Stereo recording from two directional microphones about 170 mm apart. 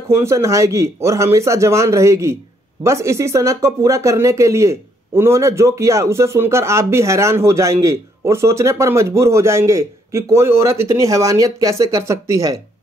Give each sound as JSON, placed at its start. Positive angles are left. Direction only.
{"t": 0.1, "sound": "speech", "side_deg": -15}